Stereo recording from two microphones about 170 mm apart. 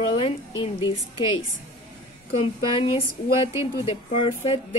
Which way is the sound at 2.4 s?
35° left (ahead or behind).